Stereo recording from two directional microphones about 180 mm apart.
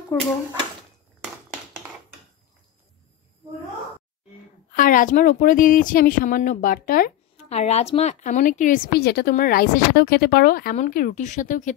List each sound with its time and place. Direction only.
0.1 s speech: 15° left (ahead or behind)
4.7 s a woman's voice: 50° left (ahead or behind)
7.4 s a woman's voice: 35° left (ahead or behind)